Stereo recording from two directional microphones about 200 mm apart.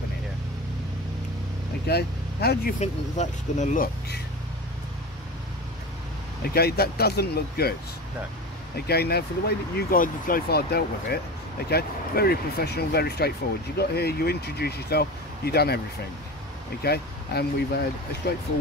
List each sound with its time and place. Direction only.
1.9 s speech: 55° left (ahead or behind)
2.8 s speech: 35° left (ahead or behind)
6.5 s speech: 50° left (ahead or behind)
8.7 s speech: 50° left (ahead or behind)
16.8 s speech: 50° left (ahead or behind)